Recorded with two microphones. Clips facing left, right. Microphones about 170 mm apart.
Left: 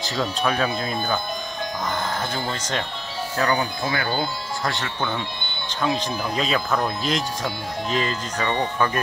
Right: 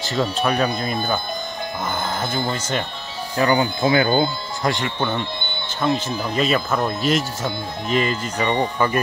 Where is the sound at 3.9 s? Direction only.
20° right (ahead or behind).